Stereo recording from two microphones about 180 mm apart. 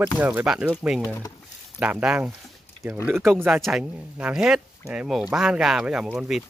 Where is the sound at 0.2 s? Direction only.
10° right (ahead or behind).